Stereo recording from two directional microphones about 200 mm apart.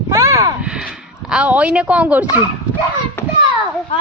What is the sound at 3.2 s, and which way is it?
Children playing, 10° left (ahead or behind).